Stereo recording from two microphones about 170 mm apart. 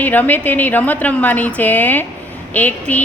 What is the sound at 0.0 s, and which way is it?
A woman's voice, 10° left (ahead or behind).